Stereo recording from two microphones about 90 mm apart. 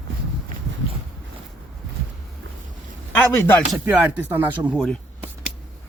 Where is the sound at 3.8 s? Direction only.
20° right (ahead or behind).